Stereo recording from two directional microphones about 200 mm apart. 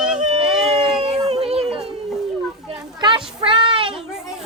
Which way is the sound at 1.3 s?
30° right (ahead or behind).